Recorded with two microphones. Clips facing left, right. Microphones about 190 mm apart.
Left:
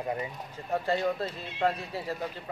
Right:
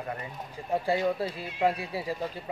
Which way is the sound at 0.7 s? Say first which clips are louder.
Right 1 dB; 10° right (ahead or behind).